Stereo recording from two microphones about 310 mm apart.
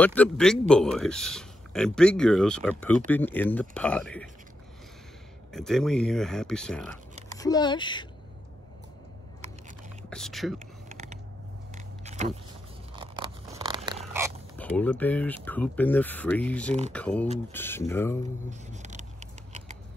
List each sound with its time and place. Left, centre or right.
0.0 s speech: centre
5.5 s speech: centre
10.0 s speech: centre
10.9 s mechanisms: right
11.7 s vehicle: right
12.9 s a sound: centre
14.6 s speech: centre
18.5 s a sound: right